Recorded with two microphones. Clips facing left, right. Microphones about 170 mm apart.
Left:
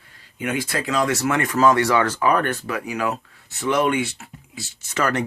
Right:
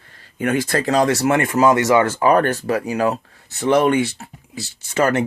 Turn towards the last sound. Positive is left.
turn(degrees=-25)  # may be behind; listen again after turning